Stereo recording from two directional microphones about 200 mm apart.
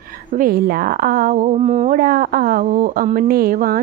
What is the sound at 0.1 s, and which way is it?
A woman's voice, 45° right (ahead or behind).